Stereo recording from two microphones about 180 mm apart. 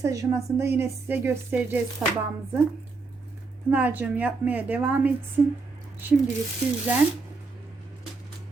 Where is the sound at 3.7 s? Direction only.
10° right (ahead or behind).